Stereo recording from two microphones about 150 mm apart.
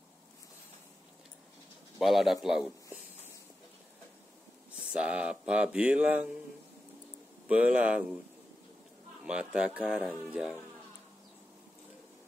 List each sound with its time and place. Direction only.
2.0 s speech: centre (ahead or behind)
4.7 s speech: 5° right (ahead or behind)
7.4 s speech: 10° right (ahead or behind)
9.2 s speech: 5° right (ahead or behind)